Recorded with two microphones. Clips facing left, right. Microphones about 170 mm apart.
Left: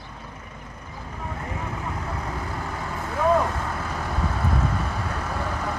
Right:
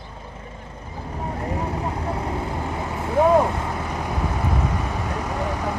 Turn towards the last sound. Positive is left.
turn(degrees=-15)  # may be behind; listen again after turning